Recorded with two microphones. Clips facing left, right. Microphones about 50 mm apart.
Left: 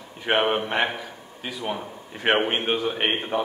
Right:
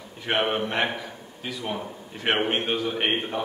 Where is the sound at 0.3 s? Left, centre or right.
Centre.